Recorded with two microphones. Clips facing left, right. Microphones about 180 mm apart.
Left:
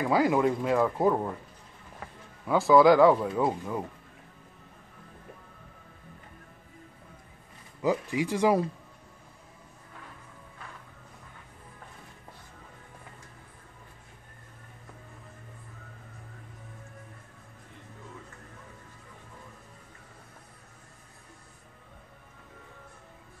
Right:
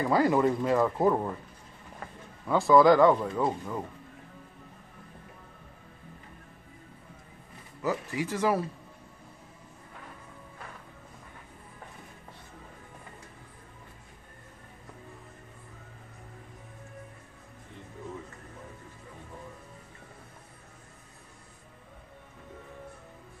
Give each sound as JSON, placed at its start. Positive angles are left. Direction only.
{"t": 0.0, "sound": "speech", "side_deg": 5}
{"t": 7.8, "sound": "speech", "side_deg": 15}